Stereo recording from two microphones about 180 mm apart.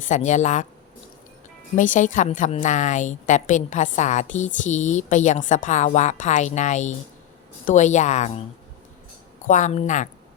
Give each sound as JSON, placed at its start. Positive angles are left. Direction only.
{"t": 0.0, "sound": "speech", "side_deg": 40}
{"t": 1.7, "sound": "a woman's voice", "side_deg": 45}
{"t": 9.5, "sound": "a woman's voice", "side_deg": 45}